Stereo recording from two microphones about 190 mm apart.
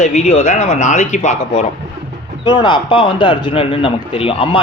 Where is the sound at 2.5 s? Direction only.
25° left (ahead or behind).